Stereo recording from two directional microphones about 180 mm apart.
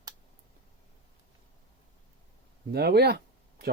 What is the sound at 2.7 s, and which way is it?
Speech, 65° right (ahead or behind).